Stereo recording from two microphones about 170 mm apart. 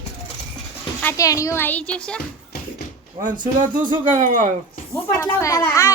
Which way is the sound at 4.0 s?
50° right (ahead or behind).